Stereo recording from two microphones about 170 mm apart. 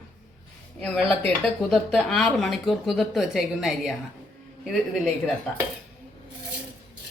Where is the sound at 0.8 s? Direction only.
10° left (ahead or behind).